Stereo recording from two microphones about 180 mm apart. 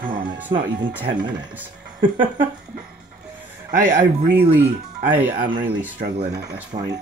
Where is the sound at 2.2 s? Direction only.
10° right (ahead or behind).